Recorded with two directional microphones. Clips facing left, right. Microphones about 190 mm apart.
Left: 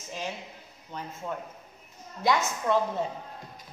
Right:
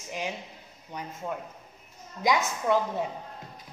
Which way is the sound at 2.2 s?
15° right (ahead or behind).